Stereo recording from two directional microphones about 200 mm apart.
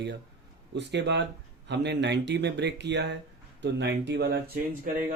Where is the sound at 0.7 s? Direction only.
60° right (ahead or behind).